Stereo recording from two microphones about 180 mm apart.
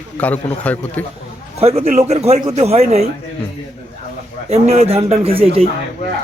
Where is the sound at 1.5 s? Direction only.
35° right (ahead or behind).